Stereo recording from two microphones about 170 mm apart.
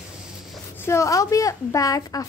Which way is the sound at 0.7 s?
15° left (ahead or behind).